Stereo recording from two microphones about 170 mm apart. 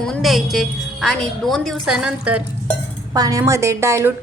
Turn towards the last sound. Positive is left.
turn(degrees=-15)  # may be behind; listen again after turning